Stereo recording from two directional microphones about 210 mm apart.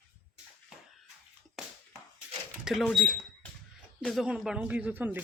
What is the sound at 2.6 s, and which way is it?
Speech, centre (ahead or behind).